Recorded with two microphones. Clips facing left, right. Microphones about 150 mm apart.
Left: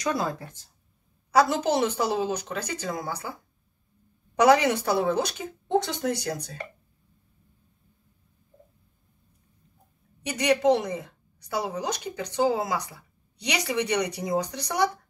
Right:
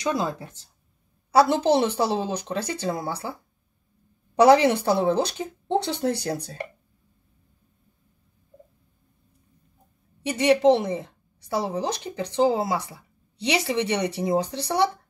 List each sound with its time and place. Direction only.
0.0 s a woman's voice: 20° right (ahead or behind)
4.4 s speech: 30° right (ahead or behind)
10.2 s a woman's voice: 25° right (ahead or behind)